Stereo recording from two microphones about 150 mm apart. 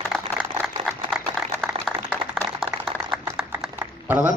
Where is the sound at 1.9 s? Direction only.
Centre (ahead or behind).